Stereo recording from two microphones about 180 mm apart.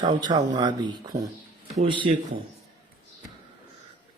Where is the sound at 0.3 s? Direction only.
25° right (ahead or behind).